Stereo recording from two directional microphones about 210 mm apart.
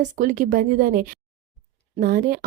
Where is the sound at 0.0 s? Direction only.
40° right (ahead or behind).